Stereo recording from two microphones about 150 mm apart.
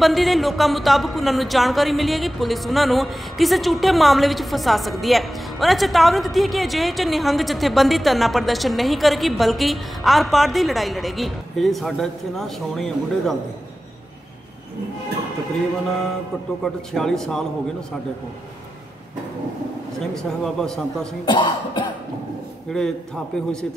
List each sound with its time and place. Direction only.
0.0 s speech: centre (ahead or behind)
16.6 s speech: 5° left (ahead or behind)
20.2 s speech: 5° left (ahead or behind)
21.3 s speech: 35° left (ahead or behind)
22.7 s speech: 5° left (ahead or behind)